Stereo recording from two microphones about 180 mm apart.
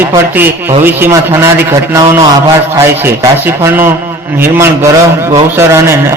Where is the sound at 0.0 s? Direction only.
10° right (ahead or behind).